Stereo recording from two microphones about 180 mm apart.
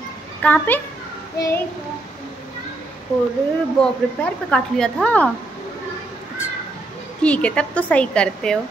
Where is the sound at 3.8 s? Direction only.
5° left (ahead or behind).